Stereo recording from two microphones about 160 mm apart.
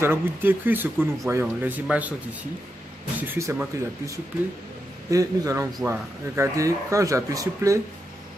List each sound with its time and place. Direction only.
0.0 s speech: 15° right (ahead or behind)
3.2 s speech: 15° right (ahead or behind)
5.1 s speech: 20° right (ahead or behind)